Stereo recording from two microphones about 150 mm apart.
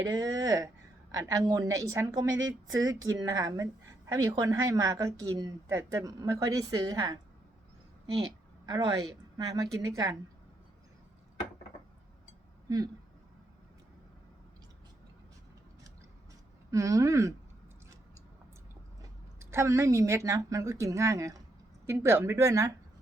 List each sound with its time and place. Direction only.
0.1 s a woman's voice: 25° right (ahead or behind)
8.2 s a woman's voice: 30° right (ahead or behind)
12.6 s speech: 25° right (ahead or behind)
16.7 s a woman's voice: 20° right (ahead or behind)
19.4 s a woman's voice: 15° right (ahead or behind)